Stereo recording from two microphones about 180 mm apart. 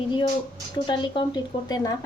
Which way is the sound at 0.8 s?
25° left (ahead or behind).